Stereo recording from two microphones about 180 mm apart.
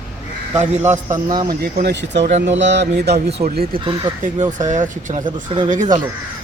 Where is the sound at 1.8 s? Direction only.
75° right (ahead or behind).